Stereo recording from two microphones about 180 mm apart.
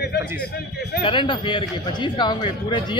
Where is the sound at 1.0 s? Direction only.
25° left (ahead or behind).